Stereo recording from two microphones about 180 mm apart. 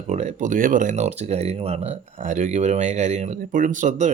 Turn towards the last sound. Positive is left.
turn(degrees=-40)  # may be behind; listen again after turning